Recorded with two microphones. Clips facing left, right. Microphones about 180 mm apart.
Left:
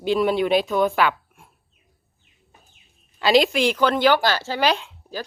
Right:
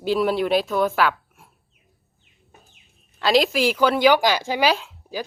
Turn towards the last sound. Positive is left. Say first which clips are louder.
# right 2 dB
turn(degrees=-10)  # may be behind; listen again after turning